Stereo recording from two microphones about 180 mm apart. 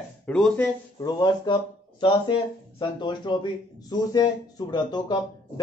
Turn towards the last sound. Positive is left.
turn(degrees=25)  # may be behind; listen again after turning